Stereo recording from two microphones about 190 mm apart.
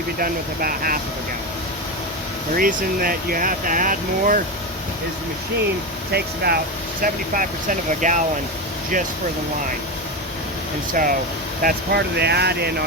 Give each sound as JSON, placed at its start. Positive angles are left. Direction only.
{"t": 0.2, "sound": "speech", "side_deg": -50}
{"t": 2.6, "sound": "speech", "side_deg": -50}
{"t": 6.1, "sound": "speech", "side_deg": -55}
{"t": 7.0, "sound": "speech", "side_deg": -45}
{"t": 10.9, "sound": "speech", "side_deg": -45}
{"t": 11.6, "sound": "speech", "side_deg": -60}